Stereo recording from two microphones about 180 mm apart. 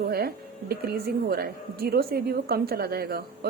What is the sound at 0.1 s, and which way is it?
Speech, 60° right (ahead or behind).